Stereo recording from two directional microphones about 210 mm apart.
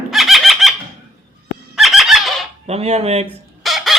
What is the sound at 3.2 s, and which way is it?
Chicken, centre (ahead or behind).